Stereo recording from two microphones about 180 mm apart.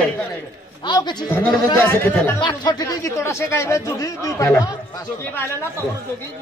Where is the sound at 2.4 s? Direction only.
25° left (ahead or behind).